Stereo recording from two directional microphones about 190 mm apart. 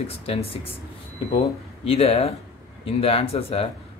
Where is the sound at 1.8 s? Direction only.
30° left (ahead or behind).